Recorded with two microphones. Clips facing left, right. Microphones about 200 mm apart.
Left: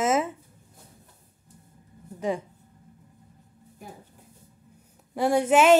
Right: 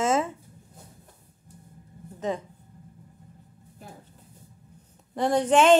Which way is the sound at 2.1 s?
10° left (ahead or behind).